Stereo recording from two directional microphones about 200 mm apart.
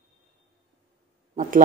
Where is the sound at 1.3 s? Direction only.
40° right (ahead or behind).